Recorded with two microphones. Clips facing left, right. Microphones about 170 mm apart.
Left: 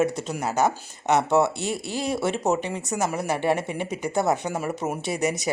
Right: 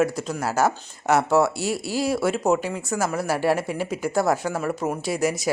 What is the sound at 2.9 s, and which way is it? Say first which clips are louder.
Speech: right 2 dB; 20° left (ahead or behind).